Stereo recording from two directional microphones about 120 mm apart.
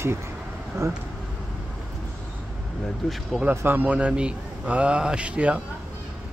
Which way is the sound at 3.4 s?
15° right (ahead or behind).